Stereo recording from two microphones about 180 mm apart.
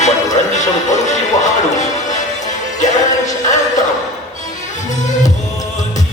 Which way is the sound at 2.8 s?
45° left (ahead or behind).